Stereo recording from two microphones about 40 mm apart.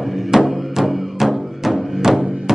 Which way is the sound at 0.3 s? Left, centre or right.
Centre.